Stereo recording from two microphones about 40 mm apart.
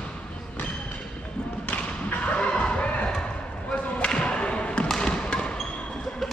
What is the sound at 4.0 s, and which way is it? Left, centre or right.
Basketball bounce, left.